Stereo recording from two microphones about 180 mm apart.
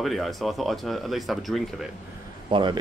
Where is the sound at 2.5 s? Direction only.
25° right (ahead or behind).